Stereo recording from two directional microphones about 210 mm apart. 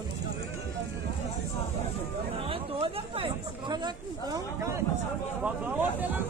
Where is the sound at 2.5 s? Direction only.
25° right (ahead or behind).